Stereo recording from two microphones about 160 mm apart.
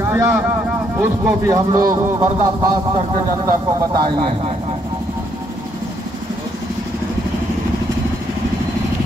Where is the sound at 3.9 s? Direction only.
30° right (ahead or behind).